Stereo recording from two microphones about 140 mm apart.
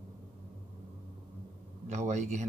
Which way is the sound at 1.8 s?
55° right (ahead or behind).